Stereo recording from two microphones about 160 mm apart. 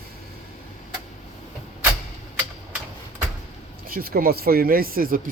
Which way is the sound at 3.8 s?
65° right (ahead or behind).